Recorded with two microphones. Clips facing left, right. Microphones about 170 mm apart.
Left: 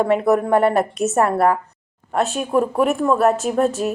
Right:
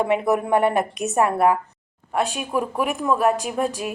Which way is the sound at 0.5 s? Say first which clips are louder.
Left 1 dB; 35° left (ahead or behind).